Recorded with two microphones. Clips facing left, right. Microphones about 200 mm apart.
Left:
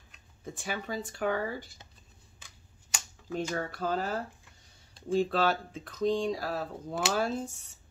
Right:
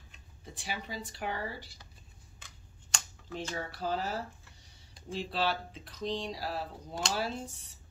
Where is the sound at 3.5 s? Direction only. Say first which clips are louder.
Even; 50° left (ahead or behind).